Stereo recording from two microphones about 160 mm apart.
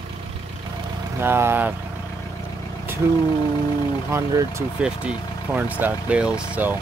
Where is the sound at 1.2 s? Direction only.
15° right (ahead or behind).